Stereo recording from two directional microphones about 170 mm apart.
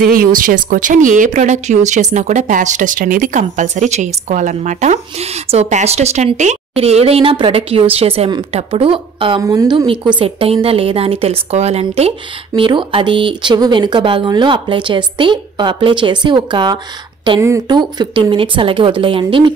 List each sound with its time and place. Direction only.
0.0 s a woman's voice: 55° right (ahead or behind); by 9.4 s 30° right (ahead or behind)
9.4 s a woman's voice: 20° right (ahead or behind)